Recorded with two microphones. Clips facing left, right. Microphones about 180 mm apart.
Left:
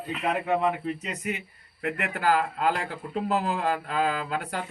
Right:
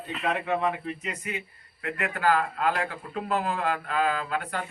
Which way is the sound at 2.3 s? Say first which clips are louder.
Left 1 dB; 30° left (ahead or behind).